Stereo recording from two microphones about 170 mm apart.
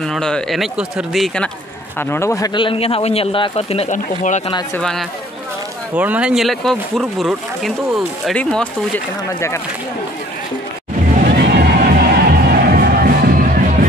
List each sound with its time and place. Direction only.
0.0 s speech: 5° left (ahead or behind)
2.0 s speech: 15° left (ahead or behind); by 4.4 s 45° left (ahead or behind)
4.7 s speech: 5° left (ahead or behind)
5.9 s speech: 10° right (ahead or behind)
11.3 s music: 65° right (ahead or behind)